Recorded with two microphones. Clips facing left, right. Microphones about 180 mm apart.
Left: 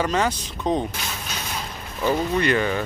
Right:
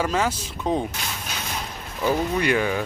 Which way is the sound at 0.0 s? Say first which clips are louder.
Left 1 dB; 5° right (ahead or behind).